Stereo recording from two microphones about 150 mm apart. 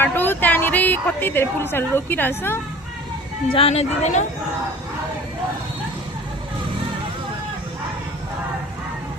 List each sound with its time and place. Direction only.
0.0 s a woman's voice: 15° left (ahead or behind)
3.5 s speech: 40° left (ahead or behind)